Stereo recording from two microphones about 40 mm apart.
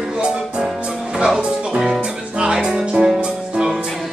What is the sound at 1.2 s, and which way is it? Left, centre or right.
Music, centre.